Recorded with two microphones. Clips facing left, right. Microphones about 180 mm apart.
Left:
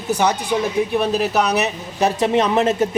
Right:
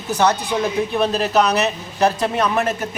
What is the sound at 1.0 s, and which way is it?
A man's voice, 10° left (ahead or behind).